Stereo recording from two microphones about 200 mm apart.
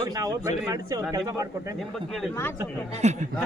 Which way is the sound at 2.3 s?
15° left (ahead or behind).